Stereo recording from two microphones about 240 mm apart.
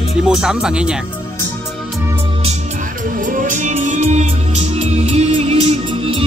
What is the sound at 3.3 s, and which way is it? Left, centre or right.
Music, right.